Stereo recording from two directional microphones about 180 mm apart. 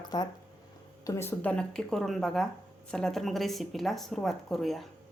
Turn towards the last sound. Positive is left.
turn(degrees=0)  # may be behind; listen again after turning